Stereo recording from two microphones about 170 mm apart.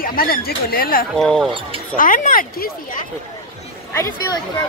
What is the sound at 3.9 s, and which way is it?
Speech, 20° left (ahead or behind).